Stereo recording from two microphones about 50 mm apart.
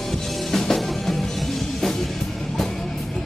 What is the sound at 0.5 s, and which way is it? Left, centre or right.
Music, centre.